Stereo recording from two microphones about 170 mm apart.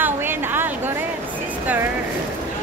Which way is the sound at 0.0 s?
10° right (ahead or behind).